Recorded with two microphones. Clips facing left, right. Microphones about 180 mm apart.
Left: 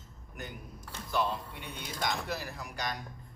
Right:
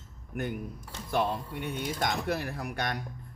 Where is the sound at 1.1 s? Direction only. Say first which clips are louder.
Right 3 dB; 55° right (ahead or behind).